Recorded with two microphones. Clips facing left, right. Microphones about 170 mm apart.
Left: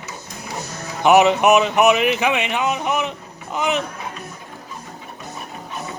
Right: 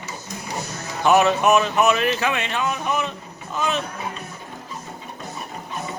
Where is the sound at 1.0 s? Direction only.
20° left (ahead or behind).